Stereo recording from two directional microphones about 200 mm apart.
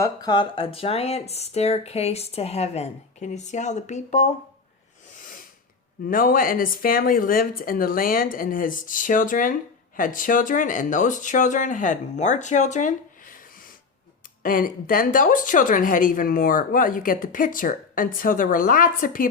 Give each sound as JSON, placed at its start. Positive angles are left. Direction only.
{"t": 0.0, "sound": "speech", "side_deg": 20}
{"t": 6.1, "sound": "a woman's voice", "side_deg": 45}